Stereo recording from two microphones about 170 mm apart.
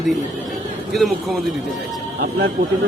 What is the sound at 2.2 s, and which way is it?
Speech, 70° right (ahead or behind).